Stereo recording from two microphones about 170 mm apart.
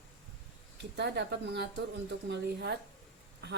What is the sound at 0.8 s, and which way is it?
A woman's voice, 85° right.